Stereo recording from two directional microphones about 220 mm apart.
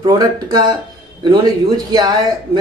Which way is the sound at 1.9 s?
20° right (ahead or behind).